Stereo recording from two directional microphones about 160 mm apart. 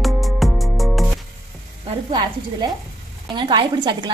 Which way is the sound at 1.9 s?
30° right (ahead or behind).